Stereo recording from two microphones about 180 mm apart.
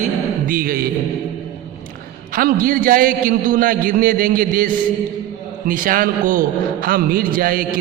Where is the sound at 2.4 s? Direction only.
50° right (ahead or behind).